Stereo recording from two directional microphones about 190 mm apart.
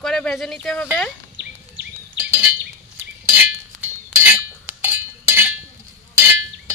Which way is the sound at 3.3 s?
5° right (ahead or behind).